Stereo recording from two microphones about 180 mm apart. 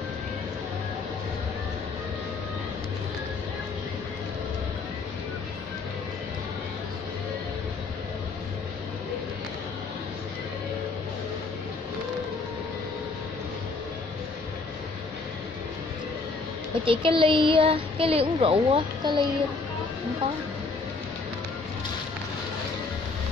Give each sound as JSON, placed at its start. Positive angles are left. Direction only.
{"t": 16.8, "sound": "child singing", "side_deg": -30}
{"t": 18.4, "sound": "speech", "side_deg": -30}